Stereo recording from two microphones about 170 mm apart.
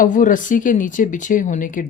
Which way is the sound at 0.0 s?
50° left (ahead or behind).